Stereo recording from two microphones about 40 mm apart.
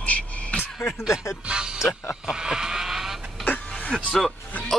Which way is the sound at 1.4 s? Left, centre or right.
Right.